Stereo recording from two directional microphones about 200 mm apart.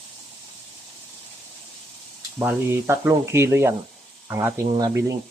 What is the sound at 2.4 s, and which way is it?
Speech, 10° right (ahead or behind).